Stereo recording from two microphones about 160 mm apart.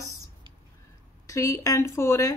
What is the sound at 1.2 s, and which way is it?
Speech, 20° left (ahead or behind).